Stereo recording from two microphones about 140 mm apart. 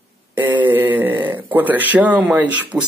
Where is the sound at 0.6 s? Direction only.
15° right (ahead or behind).